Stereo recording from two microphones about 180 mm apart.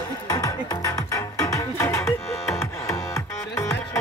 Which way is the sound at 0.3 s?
20° left (ahead or behind).